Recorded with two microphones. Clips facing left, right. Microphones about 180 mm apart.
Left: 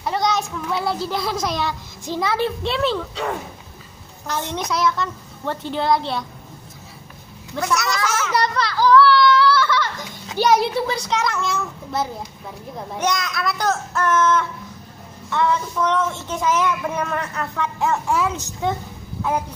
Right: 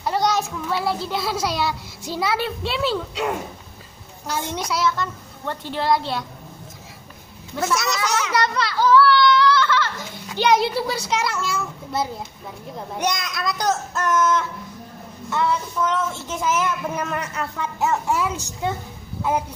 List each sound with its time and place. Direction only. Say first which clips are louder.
0.0 s a child's voice: even; centre (ahead or behind)
7.6 s a child's voice: left 1 dB; 25° right (ahead or behind)
8.4 s a child's voice: left 2 dB; centre (ahead or behind)
13.0 s a woman's voice: left 2 dB; 15° right (ahead or behind)